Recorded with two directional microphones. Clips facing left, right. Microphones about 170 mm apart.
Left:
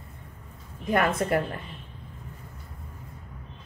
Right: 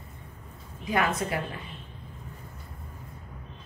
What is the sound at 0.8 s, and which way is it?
Speech, 50° left (ahead or behind).